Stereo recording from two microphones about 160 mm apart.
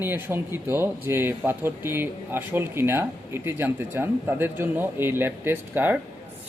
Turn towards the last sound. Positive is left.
turn(degrees=-10)  # may be behind; listen again after turning